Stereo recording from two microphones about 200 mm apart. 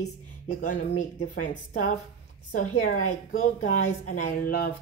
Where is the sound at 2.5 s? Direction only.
40° left (ahead or behind).